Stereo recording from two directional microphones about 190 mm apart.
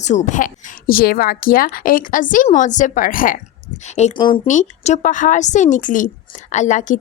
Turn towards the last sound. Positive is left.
turn(degrees=40)  # may be behind; listen again after turning